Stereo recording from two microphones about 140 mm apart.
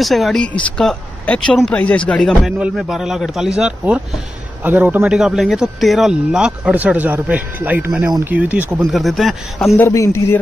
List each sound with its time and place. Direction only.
0.0 s a man's voice: centre (ahead or behind)
8.9 s a man's voice: centre (ahead or behind)
9.8 s speech: 20° left (ahead or behind)